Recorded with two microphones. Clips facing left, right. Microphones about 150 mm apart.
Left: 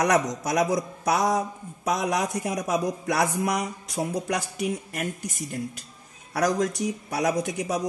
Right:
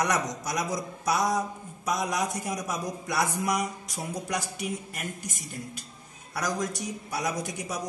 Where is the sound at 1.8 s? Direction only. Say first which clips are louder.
Left 3 dB; 60° left (ahead or behind).